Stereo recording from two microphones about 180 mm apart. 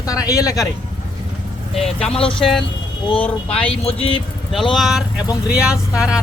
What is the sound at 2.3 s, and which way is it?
Speech, 5° left (ahead or behind).